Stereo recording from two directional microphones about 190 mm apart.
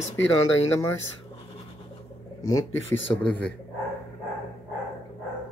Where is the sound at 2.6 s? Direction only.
90° left.